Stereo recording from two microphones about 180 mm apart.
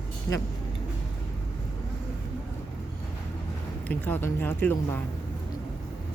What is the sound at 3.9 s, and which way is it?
Speech, 10° left (ahead or behind).